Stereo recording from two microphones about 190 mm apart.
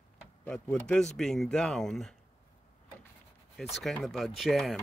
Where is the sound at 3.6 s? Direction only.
Centre (ahead or behind).